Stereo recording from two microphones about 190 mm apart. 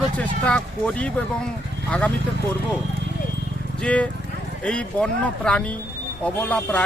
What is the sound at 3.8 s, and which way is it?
A man's voice, 5° left (ahead or behind).